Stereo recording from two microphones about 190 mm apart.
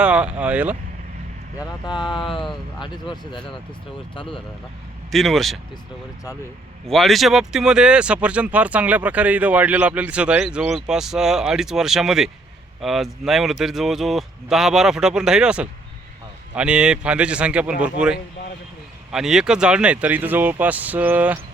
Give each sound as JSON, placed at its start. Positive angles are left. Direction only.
{"t": 0.0, "sound": "speech", "side_deg": -5}
{"t": 1.5, "sound": "speech", "side_deg": 20}
{"t": 5.1, "sound": "speech", "side_deg": 0}
{"t": 6.8, "sound": "speech", "side_deg": 0}
{"t": 19.1, "sound": "speech", "side_deg": -5}